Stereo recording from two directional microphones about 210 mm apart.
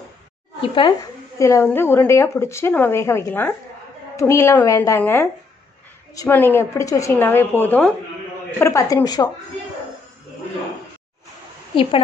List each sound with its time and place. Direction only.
0.6 s speech: 25° left (ahead or behind)
1.4 s a woman's voice: 15° left (ahead or behind)
11.7 s a woman's voice: 25° left (ahead or behind)